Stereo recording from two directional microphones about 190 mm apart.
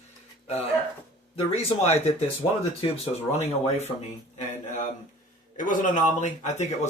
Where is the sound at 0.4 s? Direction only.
30° left (ahead or behind).